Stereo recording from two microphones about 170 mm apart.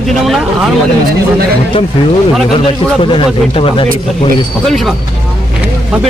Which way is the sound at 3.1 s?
30° left (ahead or behind).